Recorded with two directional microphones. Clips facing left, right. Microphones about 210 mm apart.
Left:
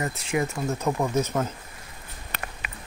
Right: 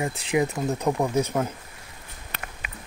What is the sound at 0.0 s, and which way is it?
Speech, 15° right (ahead or behind).